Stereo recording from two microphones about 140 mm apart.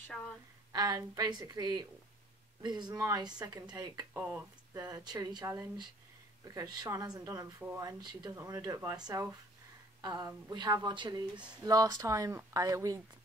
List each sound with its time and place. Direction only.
0.1 s a woman's voice: centre (ahead or behind)
0.7 s speech: 25° right (ahead or behind)
4.2 s speech: 15° right (ahead or behind)
4.8 s speech: 30° right (ahead or behind)